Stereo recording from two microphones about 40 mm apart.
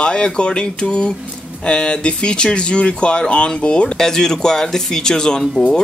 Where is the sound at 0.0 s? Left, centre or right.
Left.